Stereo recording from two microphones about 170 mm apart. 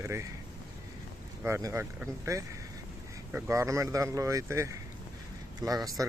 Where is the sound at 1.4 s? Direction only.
15° right (ahead or behind).